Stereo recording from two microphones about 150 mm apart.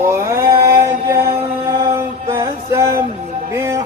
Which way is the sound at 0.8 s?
20° right (ahead or behind).